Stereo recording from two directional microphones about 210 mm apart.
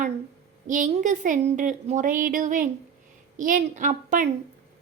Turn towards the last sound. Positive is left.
turn(degrees=-35)  # may be behind; listen again after turning